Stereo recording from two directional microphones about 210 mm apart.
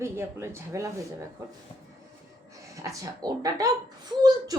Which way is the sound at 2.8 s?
15° right (ahead or behind).